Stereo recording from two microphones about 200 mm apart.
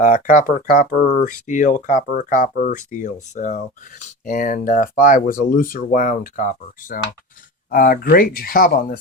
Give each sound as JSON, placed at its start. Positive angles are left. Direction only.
{"t": 0.0, "sound": "speech", "side_deg": 45}